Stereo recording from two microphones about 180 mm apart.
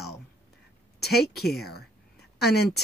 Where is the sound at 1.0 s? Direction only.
60° left (ahead or behind).